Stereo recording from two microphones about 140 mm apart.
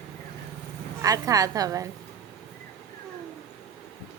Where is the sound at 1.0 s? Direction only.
25° right (ahead or behind).